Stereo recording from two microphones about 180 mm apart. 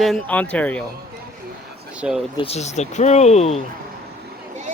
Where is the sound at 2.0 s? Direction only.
5° right (ahead or behind).